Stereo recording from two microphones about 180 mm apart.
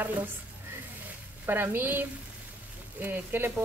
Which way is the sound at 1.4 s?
10° right (ahead or behind).